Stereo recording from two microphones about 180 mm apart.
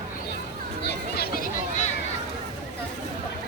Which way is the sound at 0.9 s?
60° left (ahead or behind).